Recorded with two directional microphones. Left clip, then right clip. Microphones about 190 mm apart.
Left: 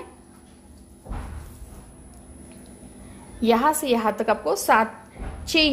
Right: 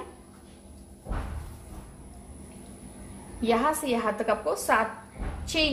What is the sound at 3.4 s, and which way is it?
A woman's voice, 50° left (ahead or behind).